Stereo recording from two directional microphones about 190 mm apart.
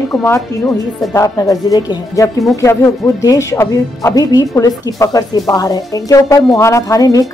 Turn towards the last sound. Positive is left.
turn(degrees=20)  # may be behind; listen again after turning